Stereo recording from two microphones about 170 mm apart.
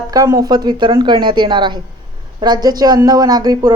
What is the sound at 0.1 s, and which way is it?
Speech, 20° right (ahead or behind).